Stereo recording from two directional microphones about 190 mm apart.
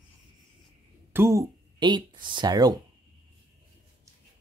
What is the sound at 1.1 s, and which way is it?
Speech, 15° right (ahead or behind).